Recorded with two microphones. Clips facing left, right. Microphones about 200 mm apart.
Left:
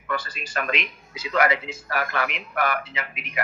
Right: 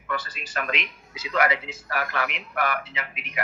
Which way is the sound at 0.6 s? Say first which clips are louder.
Left 2 dB; 45° left (ahead or behind).